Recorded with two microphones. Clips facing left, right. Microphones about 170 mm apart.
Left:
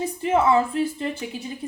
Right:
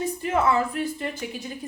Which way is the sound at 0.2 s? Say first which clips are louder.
Left 4 dB; 30° left (ahead or behind).